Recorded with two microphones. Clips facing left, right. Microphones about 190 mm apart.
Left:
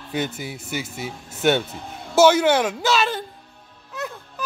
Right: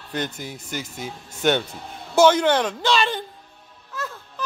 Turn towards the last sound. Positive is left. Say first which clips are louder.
# left 1 dB
turn(degrees=15)  # may be behind; listen again after turning